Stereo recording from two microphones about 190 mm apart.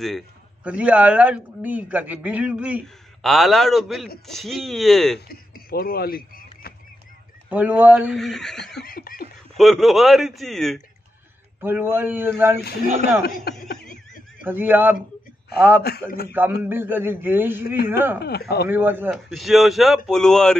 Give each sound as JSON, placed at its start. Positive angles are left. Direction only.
{"t": 0.7, "sound": "a man's voice", "side_deg": -5}
{"t": 5.3, "sound": "a sound", "side_deg": 50}
{"t": 7.4, "sound": "speech", "side_deg": -10}
{"t": 8.8, "sound": "snicker", "side_deg": 50}
{"t": 9.6, "sound": "a man's voice", "side_deg": 0}
{"t": 11.6, "sound": "speech", "side_deg": -10}
{"t": 13.2, "sound": "speech", "side_deg": 55}
{"t": 14.4, "sound": "speech", "side_deg": -10}
{"t": 18.2, "sound": "speech", "side_deg": 55}
{"t": 18.7, "sound": "speech", "side_deg": -10}
{"t": 19.0, "sound": "a man's voice", "side_deg": 0}